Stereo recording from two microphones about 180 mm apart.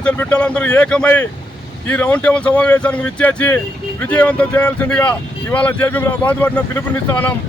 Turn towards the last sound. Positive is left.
turn(degrees=10)  # may be behind; listen again after turning